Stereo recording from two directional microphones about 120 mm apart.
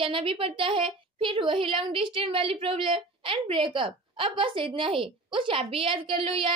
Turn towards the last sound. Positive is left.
turn(degrees=-50)  # may be behind; listen again after turning